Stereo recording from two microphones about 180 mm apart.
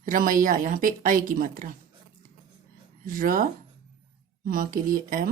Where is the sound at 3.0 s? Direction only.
50° right (ahead or behind).